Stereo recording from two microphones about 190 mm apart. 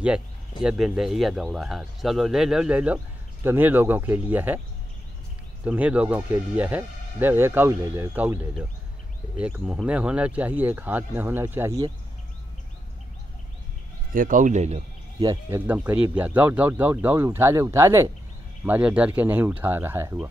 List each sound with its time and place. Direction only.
0.0 s speech: 5° right (ahead or behind)
5.6 s speech: 10° right (ahead or behind)
14.1 s speech: 45° right (ahead or behind)
15.1 s speech: 20° right (ahead or behind)